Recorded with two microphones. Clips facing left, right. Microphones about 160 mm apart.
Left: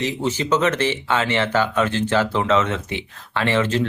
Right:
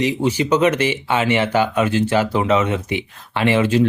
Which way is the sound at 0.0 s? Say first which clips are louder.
Right 4 dB; 10° right (ahead or behind).